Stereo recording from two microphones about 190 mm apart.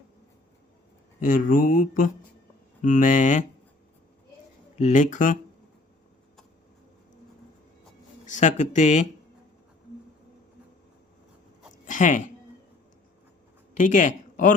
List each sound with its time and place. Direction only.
1.2 s speech: 45° left (ahead or behind)
4.8 s speech: 40° left (ahead or behind)
8.2 s speech: 40° left (ahead or behind)
11.9 s speech: 40° left (ahead or behind)
13.7 s speech: 40° left (ahead or behind)